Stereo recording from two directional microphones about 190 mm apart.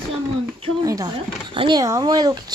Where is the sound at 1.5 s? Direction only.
25° right (ahead or behind).